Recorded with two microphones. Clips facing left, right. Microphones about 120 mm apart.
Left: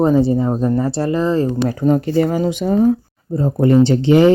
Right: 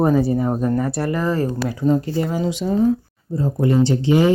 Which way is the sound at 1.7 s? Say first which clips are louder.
Left 3 dB; 60° left (ahead or behind).